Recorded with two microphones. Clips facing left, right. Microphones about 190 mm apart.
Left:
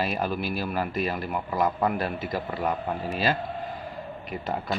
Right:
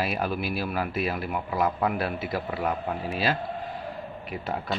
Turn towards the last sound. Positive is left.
turn(degrees=0)  # may be behind; listen again after turning